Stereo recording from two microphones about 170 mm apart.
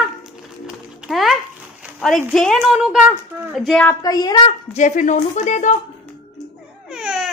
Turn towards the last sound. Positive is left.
turn(degrees=-5)  # may be behind; listen again after turning